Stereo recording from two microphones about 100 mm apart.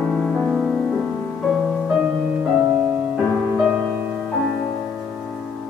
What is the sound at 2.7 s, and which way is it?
Music, 15° right (ahead or behind).